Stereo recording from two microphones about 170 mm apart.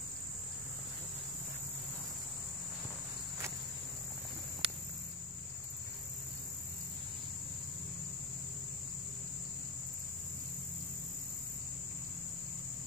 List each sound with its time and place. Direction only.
4.6 s cricket: 35° right (ahead or behind)